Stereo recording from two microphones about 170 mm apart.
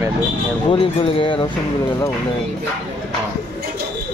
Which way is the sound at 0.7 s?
30° left (ahead or behind).